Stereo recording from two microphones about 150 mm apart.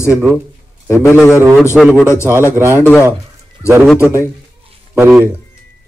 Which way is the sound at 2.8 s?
15° left (ahead or behind).